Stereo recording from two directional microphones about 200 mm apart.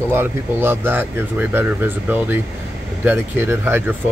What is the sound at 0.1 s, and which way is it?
Speech, 10° right (ahead or behind).